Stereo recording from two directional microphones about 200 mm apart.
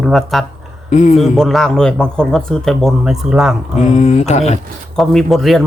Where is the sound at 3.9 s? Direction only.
35° left (ahead or behind).